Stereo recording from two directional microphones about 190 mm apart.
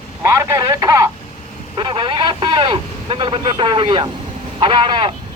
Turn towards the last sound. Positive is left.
turn(degrees=-25)  # may be behind; listen again after turning